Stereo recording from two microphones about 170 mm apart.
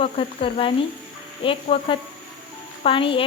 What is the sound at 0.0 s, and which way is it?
Speech, 35° left (ahead or behind).